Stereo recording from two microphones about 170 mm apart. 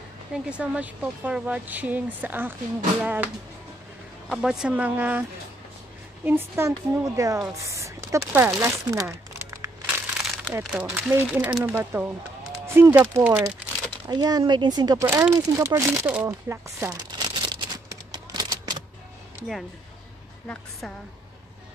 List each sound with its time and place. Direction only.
0.3 s speech: 5° right (ahead or behind)
4.3 s speech: centre (ahead or behind)
6.2 s speech: 10° right (ahead or behind)
8.2 s crumpling: 5° right (ahead or behind)
10.2 s crumpling: centre (ahead or behind)
10.6 s speech: 5° right (ahead or behind)
14.0 s speech: 25° right (ahead or behind)
15.0 s a sound: 15° right (ahead or behind)
20.8 s speech: 5° left (ahead or behind)